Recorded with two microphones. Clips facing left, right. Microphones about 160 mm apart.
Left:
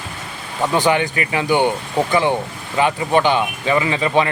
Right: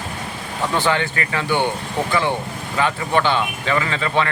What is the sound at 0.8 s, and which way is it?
Speech, 15° left (ahead or behind).